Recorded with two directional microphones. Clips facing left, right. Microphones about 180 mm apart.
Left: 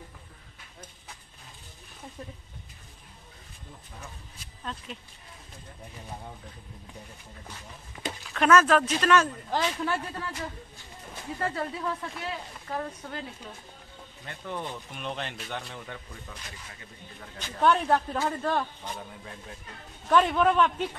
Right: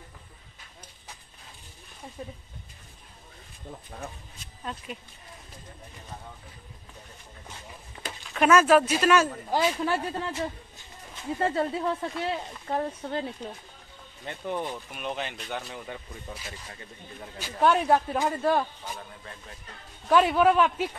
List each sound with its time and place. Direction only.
8.2 s speech: 5° right (ahead or behind)
10.1 s speech: 25° right (ahead or behind)
14.2 s speech: 20° right (ahead or behind)
20.1 s speech: 5° right (ahead or behind)